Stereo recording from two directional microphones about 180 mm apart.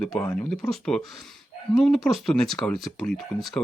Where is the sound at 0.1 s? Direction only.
20° left (ahead or behind).